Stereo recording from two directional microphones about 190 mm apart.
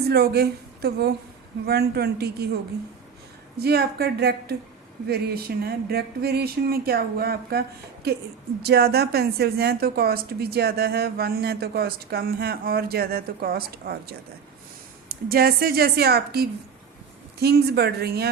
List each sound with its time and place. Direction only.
0.1 s a woman's voice: 55° right (ahead or behind)
3.6 s a woman's voice: 55° right (ahead or behind)